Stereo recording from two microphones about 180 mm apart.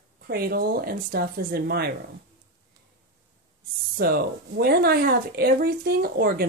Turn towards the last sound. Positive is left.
turn(degrees=-55)  # may be behind; listen again after turning